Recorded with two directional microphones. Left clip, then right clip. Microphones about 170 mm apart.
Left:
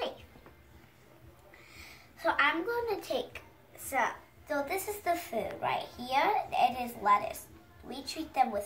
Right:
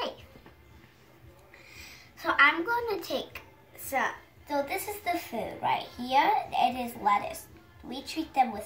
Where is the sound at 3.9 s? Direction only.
15° left (ahead or behind).